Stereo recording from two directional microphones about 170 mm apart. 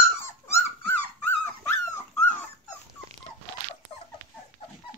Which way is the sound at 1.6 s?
15° left (ahead or behind).